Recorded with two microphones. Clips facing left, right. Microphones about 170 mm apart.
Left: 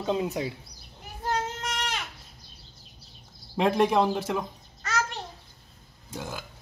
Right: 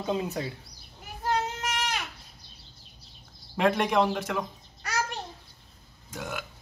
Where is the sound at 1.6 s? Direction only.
5° right (ahead or behind).